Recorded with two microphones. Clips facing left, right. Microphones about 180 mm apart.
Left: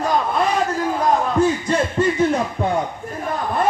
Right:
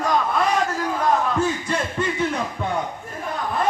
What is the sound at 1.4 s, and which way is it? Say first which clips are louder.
Speech: left 5 dB; 35° left (ahead or behind).